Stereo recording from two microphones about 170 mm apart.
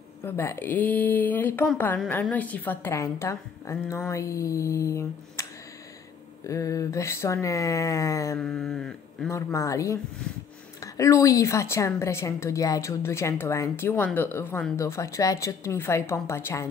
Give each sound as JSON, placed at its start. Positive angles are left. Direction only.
{"t": 0.2, "sound": "a woman's voice", "side_deg": 15}
{"t": 8.4, "sound": "speech", "side_deg": 5}
{"t": 9.3, "sound": "a woman's voice", "side_deg": 15}